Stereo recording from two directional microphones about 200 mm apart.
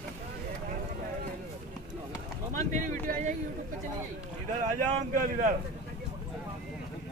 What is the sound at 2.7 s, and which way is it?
Speech, 40° right (ahead or behind).